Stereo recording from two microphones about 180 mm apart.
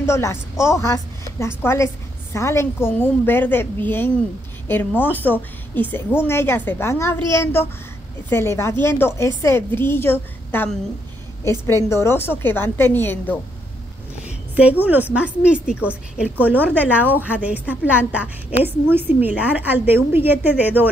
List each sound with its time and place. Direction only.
0.0 s a woman's voice: 15° left (ahead or behind)
8.3 s a woman's voice: 15° left (ahead or behind)
14.2 s a woman's voice: 10° right (ahead or behind)